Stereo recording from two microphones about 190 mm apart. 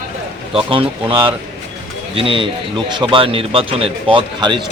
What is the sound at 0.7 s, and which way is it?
Speech, 30° right (ahead or behind).